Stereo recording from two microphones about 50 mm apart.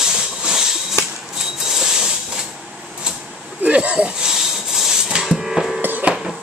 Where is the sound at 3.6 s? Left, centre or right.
Right; by 5.8 s centre.